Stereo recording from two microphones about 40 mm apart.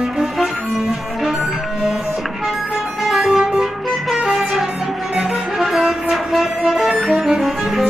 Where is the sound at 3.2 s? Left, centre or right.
Centre.